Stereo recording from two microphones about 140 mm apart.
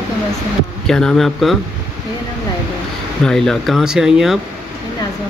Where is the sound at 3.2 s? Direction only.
5° left (ahead or behind).